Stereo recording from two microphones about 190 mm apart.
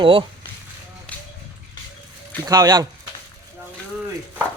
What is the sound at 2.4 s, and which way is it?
Speech, 20° right (ahead or behind).